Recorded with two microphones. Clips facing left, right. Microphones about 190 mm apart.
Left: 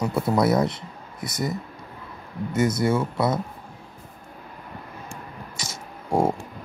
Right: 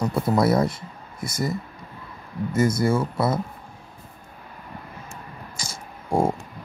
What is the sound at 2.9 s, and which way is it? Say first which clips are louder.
Speech: even; 25° right (ahead or behind).